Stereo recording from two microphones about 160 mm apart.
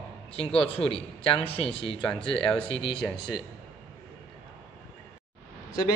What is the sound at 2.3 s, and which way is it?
Speech, 5° left (ahead or behind).